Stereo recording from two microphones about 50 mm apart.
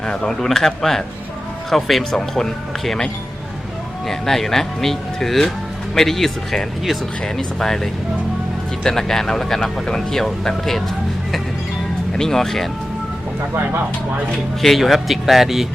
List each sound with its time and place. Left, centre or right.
0.0 s speech: centre
0.3 s speech: centre
4.1 s speech: centre
12.1 s speech: centre
14.6 s speech: centre